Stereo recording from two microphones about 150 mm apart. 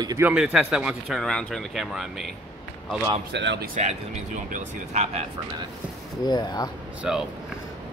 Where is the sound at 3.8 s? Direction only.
50° right (ahead or behind).